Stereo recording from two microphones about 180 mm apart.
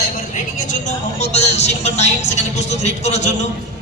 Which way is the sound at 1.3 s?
35° left (ahead or behind).